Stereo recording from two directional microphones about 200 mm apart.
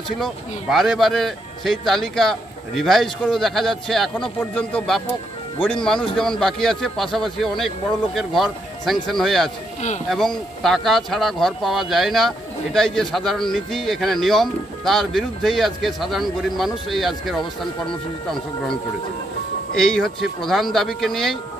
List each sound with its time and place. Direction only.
0.2 s speech: centre (ahead or behind)
19.7 s speech: 5° left (ahead or behind)